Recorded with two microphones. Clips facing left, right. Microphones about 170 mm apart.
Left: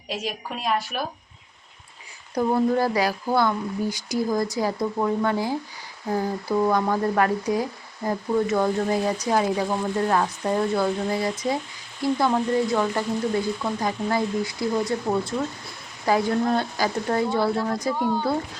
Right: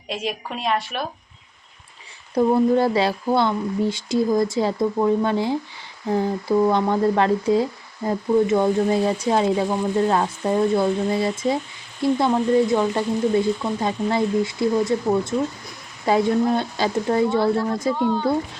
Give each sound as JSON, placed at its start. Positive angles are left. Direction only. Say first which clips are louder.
{"t": 0.1, "sound": "speech", "louder": "right 3 dB", "side_deg": 0}
{"t": 2.3, "sound": "speech", "louder": "right 4 dB", "side_deg": -25}
{"t": 17.9, "sound": "speech", "louder": "right 3 dB", "side_deg": 10}